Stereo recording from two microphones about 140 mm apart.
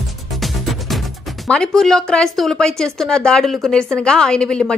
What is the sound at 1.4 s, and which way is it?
A woman's voice, 5° left (ahead or behind).